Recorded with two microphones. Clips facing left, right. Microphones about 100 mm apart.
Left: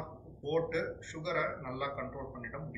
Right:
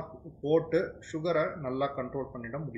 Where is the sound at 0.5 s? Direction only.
15° right (ahead or behind).